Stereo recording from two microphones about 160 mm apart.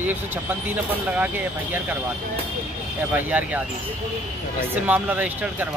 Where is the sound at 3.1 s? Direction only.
10° right (ahead or behind).